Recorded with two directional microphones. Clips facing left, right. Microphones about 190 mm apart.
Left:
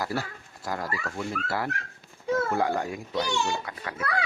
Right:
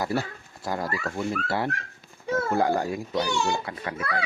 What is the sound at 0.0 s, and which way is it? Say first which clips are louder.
A child's voice: right 3 dB; 25° right (ahead or behind).